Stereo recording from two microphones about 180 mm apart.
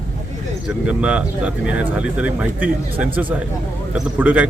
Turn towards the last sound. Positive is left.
turn(degrees=-10)  # may be behind; listen again after turning